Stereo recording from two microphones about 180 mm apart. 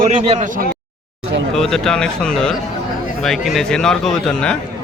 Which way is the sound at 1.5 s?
Centre (ahead or behind).